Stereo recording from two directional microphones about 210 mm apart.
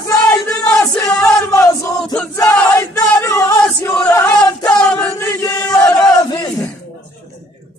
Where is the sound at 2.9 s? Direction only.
15° left (ahead or behind).